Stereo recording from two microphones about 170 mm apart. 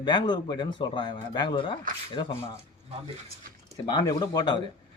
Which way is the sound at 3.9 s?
25° left (ahead or behind).